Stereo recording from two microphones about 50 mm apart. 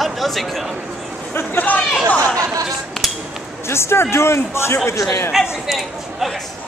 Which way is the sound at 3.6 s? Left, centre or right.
Left.